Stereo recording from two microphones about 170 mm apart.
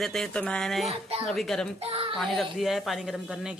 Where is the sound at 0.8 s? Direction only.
35° right (ahead or behind).